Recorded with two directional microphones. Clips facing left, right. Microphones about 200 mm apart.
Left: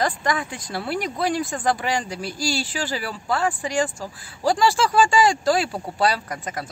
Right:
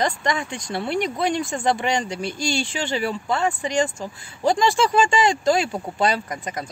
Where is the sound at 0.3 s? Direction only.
5° left (ahead or behind).